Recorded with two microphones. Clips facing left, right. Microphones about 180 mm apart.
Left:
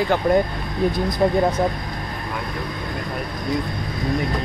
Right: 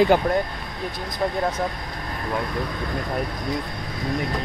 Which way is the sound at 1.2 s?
10° left (ahead or behind).